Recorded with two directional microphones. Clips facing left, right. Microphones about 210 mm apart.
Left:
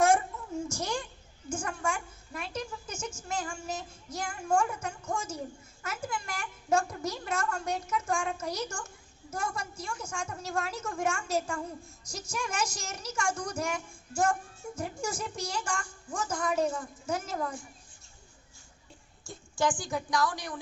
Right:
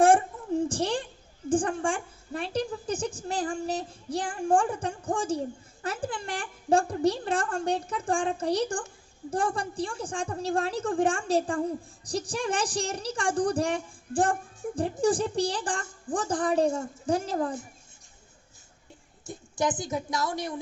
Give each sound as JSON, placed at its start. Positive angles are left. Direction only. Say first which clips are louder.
{"t": 0.7, "sound": "a sound", "louder": "right 6 dB", "side_deg": -30}
{"t": 1.5, "sound": "a woman's voice", "louder": "right 8 dB", "side_deg": -30}
{"t": 19.3, "sound": "a woman's voice", "louder": "right 1 dB", "side_deg": -20}